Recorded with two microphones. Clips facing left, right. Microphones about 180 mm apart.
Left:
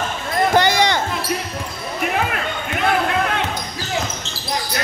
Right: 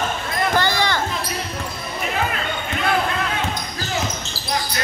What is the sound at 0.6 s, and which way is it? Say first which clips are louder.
Basketball bounce: left 4 dB; 20° left (ahead or behind).